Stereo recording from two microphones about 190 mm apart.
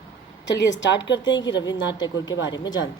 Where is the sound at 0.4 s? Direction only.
70° left (ahead or behind).